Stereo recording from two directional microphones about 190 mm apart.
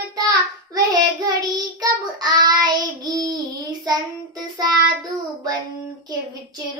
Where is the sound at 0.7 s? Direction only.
20° right (ahead or behind).